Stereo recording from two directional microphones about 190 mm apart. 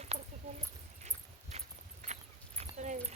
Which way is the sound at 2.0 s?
40° right (ahead or behind).